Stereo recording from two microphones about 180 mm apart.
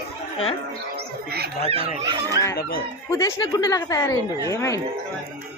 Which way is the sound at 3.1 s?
20° left (ahead or behind).